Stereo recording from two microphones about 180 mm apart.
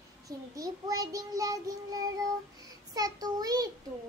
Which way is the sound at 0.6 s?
20° right (ahead or behind).